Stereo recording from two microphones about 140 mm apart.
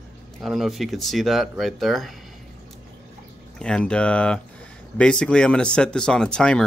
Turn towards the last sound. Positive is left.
turn(degrees=5)  # may be behind; listen again after turning